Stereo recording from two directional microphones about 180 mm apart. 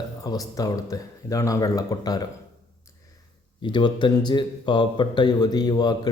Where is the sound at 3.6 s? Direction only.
25° left (ahead or behind).